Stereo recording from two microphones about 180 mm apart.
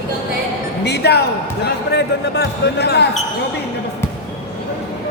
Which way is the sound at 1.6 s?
70° left (ahead or behind).